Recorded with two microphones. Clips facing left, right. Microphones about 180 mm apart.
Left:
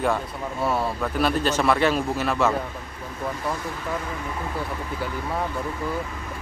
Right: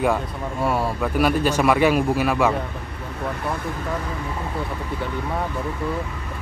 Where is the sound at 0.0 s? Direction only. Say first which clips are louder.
Right 3 dB; 10° right (ahead or behind).